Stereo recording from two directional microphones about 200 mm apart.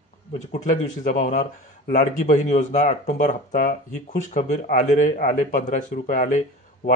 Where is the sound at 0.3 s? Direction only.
35° left (ahead or behind).